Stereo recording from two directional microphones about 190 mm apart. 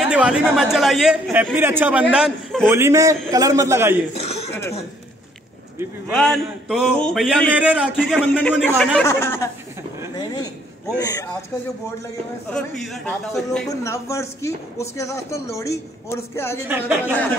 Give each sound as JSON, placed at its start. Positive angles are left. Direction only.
{"t": 0.1, "sound": "a man's voice", "side_deg": -5}
{"t": 2.7, "sound": "a man's voice", "side_deg": -15}
{"t": 4.1, "sound": "a sound", "side_deg": 35}
{"t": 4.5, "sound": "cough", "side_deg": 15}
{"t": 6.1, "sound": "a man's voice", "side_deg": 0}
{"t": 7.9, "sound": "a man's voice", "side_deg": 5}
{"t": 9.0, "sound": "speech", "side_deg": 15}
{"t": 10.1, "sound": "a sound", "side_deg": 20}
{"t": 11.0, "sound": "speech", "side_deg": 20}
{"t": 12.4, "sound": "a man's voice", "side_deg": 0}
{"t": 13.7, "sound": "speech", "side_deg": 15}
{"t": 16.6, "sound": "a man's voice", "side_deg": -10}